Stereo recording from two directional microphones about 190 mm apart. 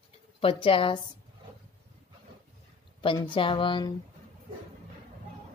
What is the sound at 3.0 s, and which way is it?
Speech, 25° left (ahead or behind).